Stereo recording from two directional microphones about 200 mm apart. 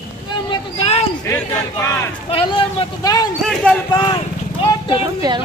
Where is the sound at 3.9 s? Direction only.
20° left (ahead or behind).